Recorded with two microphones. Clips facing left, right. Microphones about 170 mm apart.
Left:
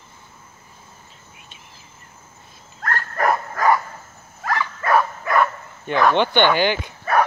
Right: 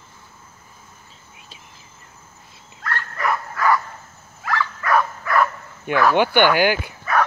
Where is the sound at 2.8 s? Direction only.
45° left (ahead or behind).